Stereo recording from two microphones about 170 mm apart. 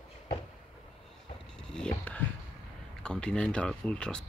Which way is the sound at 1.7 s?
5° left (ahead or behind).